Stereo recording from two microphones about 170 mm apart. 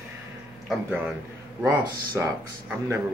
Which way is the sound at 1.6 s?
15° right (ahead or behind).